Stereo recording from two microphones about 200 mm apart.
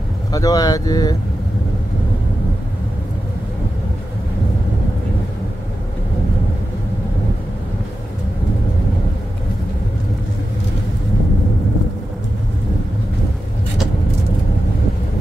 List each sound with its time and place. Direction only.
0.3 s speech: 15° left (ahead or behind)